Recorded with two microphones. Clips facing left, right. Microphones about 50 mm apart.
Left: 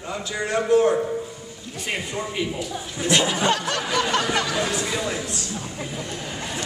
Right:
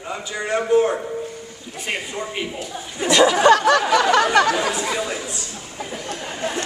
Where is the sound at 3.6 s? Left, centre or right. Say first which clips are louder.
Right 8 dB; right.